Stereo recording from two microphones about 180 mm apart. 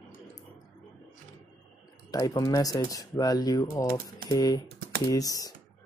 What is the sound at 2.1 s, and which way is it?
Speech, 20° left (ahead or behind).